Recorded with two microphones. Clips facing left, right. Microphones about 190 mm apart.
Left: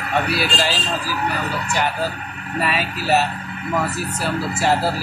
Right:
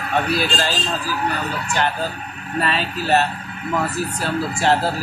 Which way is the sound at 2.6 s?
10° left (ahead or behind).